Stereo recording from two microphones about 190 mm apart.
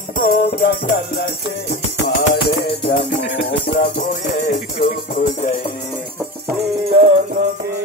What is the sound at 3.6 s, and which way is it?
Music, 45° left (ahead or behind).